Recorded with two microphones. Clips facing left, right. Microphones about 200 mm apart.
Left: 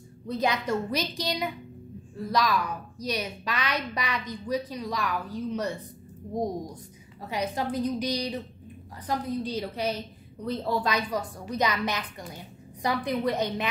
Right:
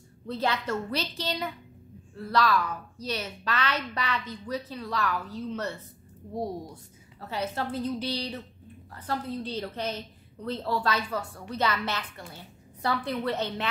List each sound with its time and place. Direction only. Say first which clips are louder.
0.3 s a woman's voice: left 2 dB; 15° left (ahead or behind)